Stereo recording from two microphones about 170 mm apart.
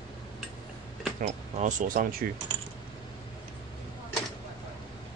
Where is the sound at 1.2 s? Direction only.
45° right (ahead or behind).